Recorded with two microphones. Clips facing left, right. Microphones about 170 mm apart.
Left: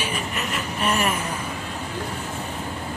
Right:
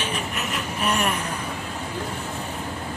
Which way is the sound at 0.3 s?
Centre (ahead or behind).